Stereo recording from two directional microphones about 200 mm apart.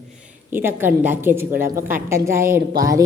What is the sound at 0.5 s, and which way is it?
A woman's voice, 10° right (ahead or behind).